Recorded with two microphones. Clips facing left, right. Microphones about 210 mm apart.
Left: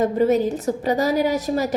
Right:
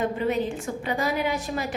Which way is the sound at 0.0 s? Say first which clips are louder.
Left 7 dB; 40° left (ahead or behind).